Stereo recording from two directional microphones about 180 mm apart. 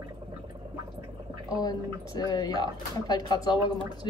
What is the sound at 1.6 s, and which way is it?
A woman's voice, 20° left (ahead or behind).